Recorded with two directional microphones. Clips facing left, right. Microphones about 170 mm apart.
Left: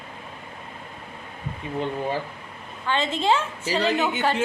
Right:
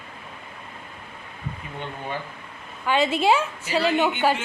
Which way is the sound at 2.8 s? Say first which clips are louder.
Right 3 dB; 10° right (ahead or behind).